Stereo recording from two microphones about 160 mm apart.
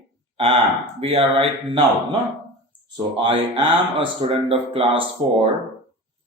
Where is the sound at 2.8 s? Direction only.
30° right (ahead or behind).